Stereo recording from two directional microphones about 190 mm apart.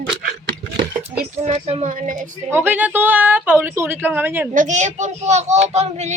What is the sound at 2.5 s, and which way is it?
A woman's voice, 10° right (ahead or behind).